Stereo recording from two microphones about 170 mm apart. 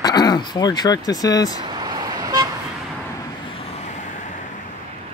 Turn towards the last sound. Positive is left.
turn(degrees=45)  # may be behind; listen again after turning